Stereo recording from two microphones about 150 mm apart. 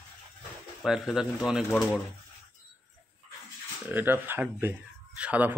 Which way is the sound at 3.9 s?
10° right (ahead or behind).